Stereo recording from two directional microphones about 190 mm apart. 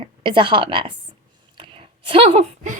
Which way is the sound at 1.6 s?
25° right (ahead or behind).